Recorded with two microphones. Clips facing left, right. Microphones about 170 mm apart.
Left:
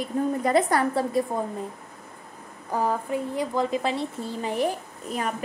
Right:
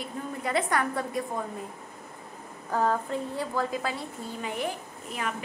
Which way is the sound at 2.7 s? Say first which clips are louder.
Left 1 dB; 10° left (ahead or behind).